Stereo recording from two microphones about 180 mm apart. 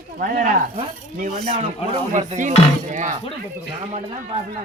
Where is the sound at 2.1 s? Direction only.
40° right (ahead or behind).